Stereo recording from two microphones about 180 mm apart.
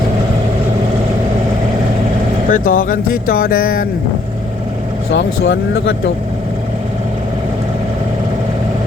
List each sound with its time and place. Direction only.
2.5 s speech: 50° left (ahead or behind)
5.1 s speech: 75° left (ahead or behind)